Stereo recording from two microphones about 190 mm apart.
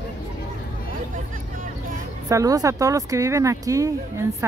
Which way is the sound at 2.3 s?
15° right (ahead or behind).